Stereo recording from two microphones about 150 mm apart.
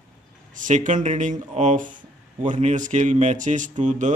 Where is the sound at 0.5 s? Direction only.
60° right (ahead or behind).